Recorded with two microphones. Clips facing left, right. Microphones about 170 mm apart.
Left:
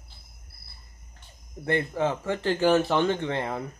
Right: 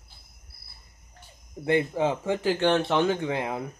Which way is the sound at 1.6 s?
15° right (ahead or behind).